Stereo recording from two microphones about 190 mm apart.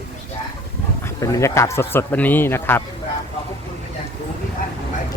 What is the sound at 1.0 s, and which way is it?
A man's voice, 15° left (ahead or behind).